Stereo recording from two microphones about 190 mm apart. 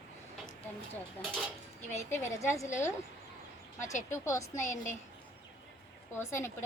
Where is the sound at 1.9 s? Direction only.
15° left (ahead or behind).